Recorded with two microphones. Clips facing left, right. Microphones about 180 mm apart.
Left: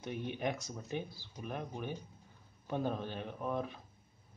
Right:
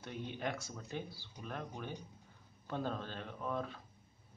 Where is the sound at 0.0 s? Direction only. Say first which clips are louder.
Left 4 dB; 15° left (ahead or behind).